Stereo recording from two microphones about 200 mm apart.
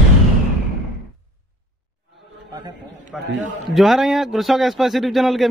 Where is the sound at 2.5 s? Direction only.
20° right (ahead or behind).